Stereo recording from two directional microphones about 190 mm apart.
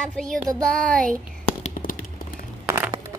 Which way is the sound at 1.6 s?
45° left (ahead or behind).